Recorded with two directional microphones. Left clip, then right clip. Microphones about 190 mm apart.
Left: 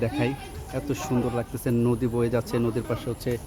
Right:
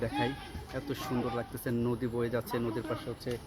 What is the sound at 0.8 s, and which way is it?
Speech, 25° left (ahead or behind).